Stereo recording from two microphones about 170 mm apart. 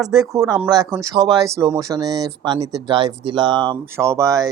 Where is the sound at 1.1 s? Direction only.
25° right (ahead or behind).